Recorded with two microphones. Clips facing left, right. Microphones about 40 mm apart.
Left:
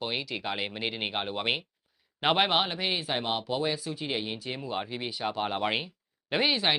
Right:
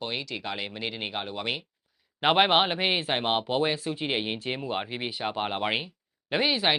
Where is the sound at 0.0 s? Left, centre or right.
Centre.